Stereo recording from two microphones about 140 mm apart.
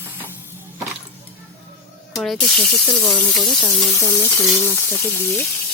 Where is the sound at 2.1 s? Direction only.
5° left (ahead or behind).